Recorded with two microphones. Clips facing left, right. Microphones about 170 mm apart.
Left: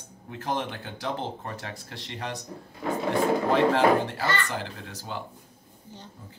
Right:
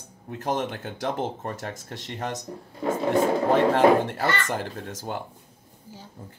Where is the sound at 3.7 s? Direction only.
50° right (ahead or behind).